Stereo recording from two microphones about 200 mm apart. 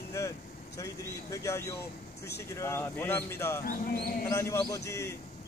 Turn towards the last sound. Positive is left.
turn(degrees=15)  # may be behind; listen again after turning